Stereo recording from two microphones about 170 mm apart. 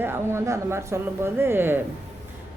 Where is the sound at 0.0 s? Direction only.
15° right (ahead or behind).